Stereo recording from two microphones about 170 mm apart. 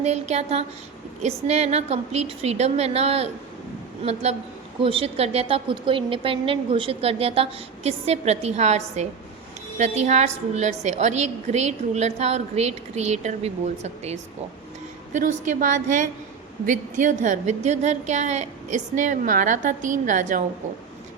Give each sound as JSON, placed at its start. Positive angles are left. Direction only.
{"t": 0.0, "sound": "a woman's voice", "side_deg": -40}